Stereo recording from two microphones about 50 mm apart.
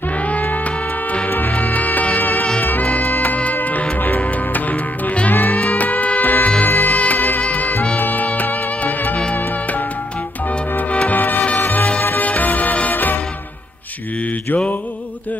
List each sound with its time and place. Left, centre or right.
0.2 s music: left
10.9 s music: left